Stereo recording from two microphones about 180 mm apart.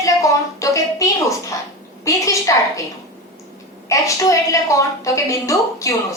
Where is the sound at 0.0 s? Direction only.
15° left (ahead or behind).